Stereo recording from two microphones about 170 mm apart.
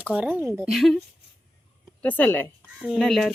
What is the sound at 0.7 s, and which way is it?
Speech, centre (ahead or behind).